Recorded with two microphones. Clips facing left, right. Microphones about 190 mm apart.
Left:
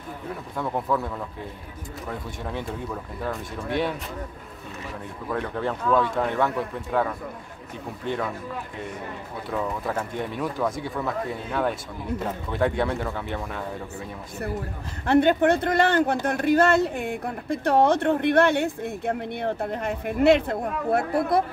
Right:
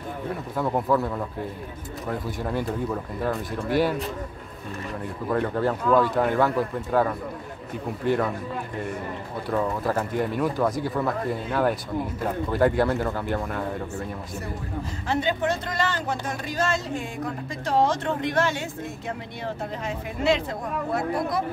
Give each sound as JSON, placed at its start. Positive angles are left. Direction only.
{"t": 0.6, "sound": "speech", "side_deg": -5}
{"t": 5.3, "sound": "speech", "side_deg": -5}
{"t": 9.5, "sound": "speech", "side_deg": 0}
{"t": 15.0, "sound": "speech", "side_deg": 60}